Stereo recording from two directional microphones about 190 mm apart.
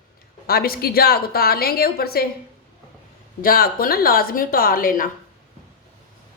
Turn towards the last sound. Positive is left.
turn(degrees=45)  # may be behind; listen again after turning